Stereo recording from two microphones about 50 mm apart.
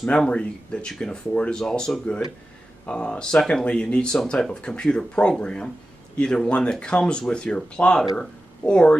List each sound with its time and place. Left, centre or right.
0.3 s speech: left